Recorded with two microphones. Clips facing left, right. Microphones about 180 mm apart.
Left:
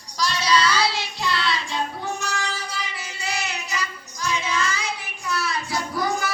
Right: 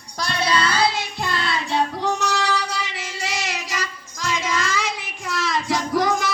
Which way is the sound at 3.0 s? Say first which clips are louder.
Right 2 dB; 85° right.